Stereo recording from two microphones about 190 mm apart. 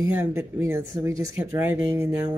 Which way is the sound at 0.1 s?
10° right (ahead or behind).